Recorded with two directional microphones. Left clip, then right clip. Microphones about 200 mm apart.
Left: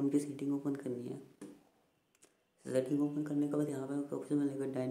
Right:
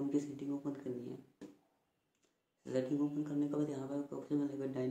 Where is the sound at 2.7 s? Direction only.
30° left (ahead or behind).